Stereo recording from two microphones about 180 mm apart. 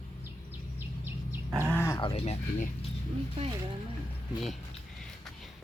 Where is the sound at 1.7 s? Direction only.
15° left (ahead or behind).